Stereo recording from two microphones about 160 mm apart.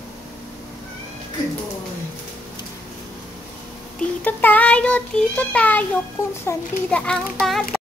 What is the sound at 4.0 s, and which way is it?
A child's voice, 10° left (ahead or behind).